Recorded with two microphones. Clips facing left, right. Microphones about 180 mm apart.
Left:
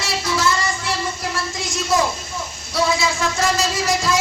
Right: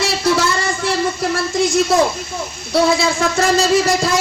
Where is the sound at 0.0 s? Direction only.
60° right (ahead or behind).